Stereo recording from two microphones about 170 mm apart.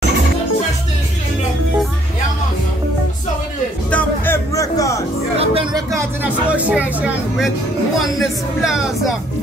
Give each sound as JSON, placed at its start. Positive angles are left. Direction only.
{"t": 3.9, "sound": "music", "side_deg": 15}
{"t": 5.4, "sound": "vehicle", "side_deg": -30}
{"t": 5.9, "sound": "speech", "side_deg": -5}